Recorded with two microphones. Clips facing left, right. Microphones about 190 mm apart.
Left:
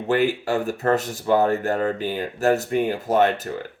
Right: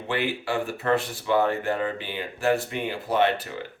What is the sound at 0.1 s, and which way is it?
Speech, 45° left (ahead or behind).